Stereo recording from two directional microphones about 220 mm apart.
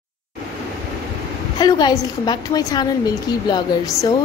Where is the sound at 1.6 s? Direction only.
20° left (ahead or behind).